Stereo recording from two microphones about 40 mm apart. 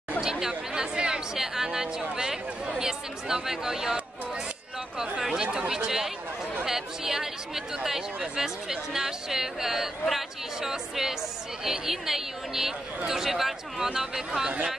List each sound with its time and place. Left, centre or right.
0.2 s chatter: centre
0.7 s speech: right
4.9 s chatter: right
5.3 s speech: right